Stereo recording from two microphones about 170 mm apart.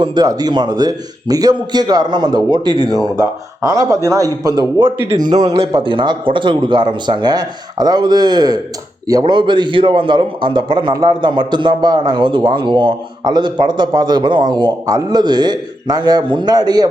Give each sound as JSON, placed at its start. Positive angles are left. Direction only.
{"t": 0.0, "sound": "a man's voice", "side_deg": -25}
{"t": 5.7, "sound": "a man's voice", "side_deg": -30}